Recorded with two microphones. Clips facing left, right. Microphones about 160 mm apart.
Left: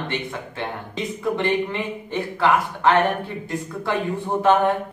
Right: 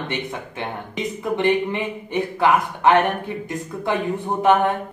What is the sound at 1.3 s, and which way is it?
A man's voice, 15° right (ahead or behind).